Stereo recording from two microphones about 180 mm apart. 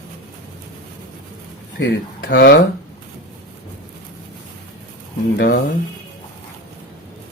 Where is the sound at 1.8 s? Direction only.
75° left (ahead or behind).